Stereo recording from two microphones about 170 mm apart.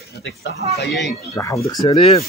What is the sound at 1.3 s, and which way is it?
Speech, 15° left (ahead or behind).